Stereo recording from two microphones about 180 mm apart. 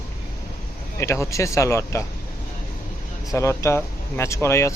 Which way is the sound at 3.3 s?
15° left (ahead or behind).